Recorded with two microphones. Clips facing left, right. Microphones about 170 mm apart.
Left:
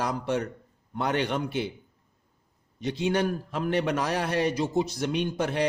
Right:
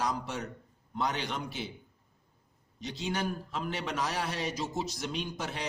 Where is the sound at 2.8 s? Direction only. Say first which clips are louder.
Left 8 dB; 60° left (ahead or behind).